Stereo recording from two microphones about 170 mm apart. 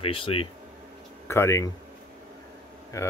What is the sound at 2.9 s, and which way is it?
Speech, 15° left (ahead or behind).